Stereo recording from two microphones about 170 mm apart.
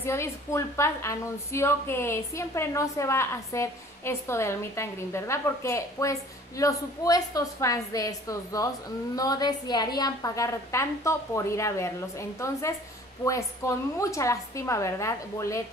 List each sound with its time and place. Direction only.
0.0 s a woman's voice: 15° left (ahead or behind)